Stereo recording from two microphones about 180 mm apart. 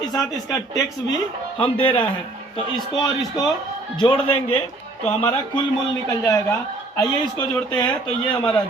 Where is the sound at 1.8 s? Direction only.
30° left (ahead or behind).